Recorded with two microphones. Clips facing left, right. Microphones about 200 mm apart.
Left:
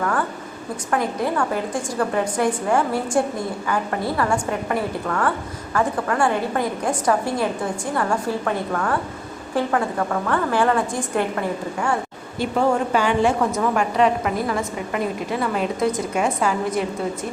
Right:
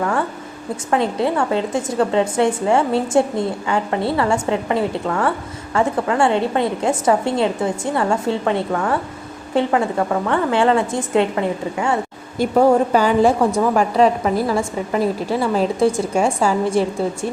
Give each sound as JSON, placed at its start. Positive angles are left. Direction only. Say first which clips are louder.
{"t": 0.9, "sound": "a woman's voice", "louder": "right 4 dB", "side_deg": -25}
{"t": 12.4, "sound": "a woman's voice", "louder": "right 6 dB", "side_deg": -40}